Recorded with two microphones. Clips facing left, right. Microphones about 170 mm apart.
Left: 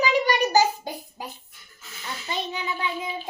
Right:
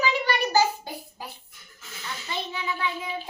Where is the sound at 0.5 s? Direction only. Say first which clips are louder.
Left 2 dB; 15° left (ahead or behind).